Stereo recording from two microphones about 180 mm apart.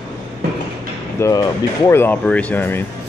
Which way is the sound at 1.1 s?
20° left (ahead or behind).